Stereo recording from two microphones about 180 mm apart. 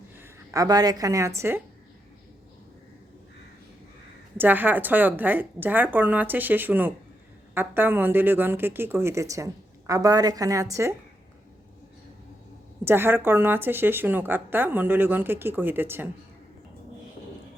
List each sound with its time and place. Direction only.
0.2 s a woman's voice: 20° right (ahead or behind)
4.4 s a woman's voice: 10° right (ahead or behind)
12.8 s a woman's voice: 10° right (ahead or behind)